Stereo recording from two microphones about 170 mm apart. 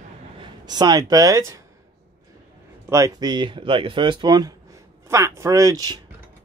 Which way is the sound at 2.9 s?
20° right (ahead or behind).